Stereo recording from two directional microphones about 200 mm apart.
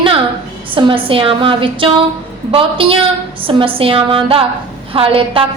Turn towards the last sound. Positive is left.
turn(degrees=-25)  # may be behind; listen again after turning